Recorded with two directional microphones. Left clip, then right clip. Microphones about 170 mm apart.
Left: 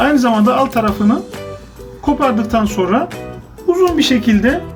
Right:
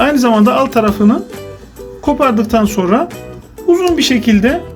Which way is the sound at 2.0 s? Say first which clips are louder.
Right 2 dB; 50° right (ahead or behind).